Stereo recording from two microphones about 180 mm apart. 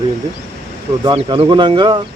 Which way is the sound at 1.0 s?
25° right (ahead or behind).